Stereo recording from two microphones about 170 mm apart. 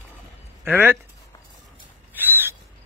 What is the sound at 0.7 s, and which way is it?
Speech, 10° right (ahead or behind).